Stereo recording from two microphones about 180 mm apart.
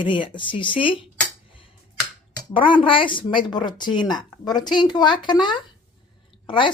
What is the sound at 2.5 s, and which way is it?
Speech, 30° left (ahead or behind).